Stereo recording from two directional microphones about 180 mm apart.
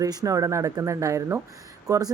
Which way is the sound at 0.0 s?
20° right (ahead or behind).